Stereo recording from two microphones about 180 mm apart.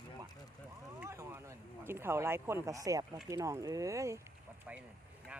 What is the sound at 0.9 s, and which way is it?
Speech, 15° right (ahead or behind).